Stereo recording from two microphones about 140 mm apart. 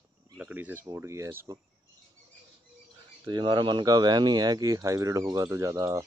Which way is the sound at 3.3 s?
30° right (ahead or behind).